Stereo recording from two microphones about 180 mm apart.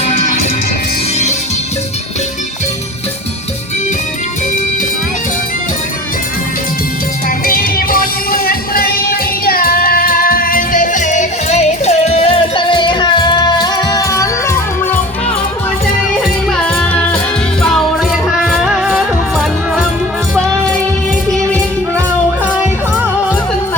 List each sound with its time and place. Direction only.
7.3 s music: 55° left (ahead or behind); by 14.9 s 15° left (ahead or behind)
16.5 s music: 5° left (ahead or behind)